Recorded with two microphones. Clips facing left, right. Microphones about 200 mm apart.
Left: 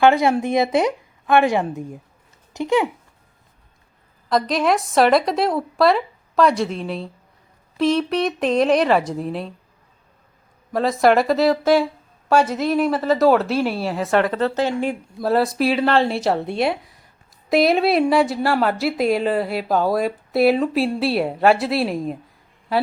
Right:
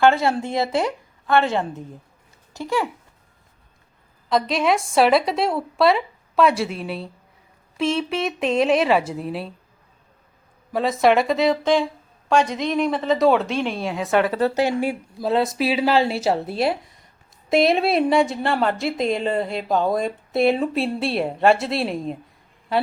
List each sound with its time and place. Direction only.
0.0 s a woman's voice: 15° left (ahead or behind)
4.3 s speech: centre (ahead or behind)
10.7 s speech: centre (ahead or behind)
15.2 s speech: centre (ahead or behind)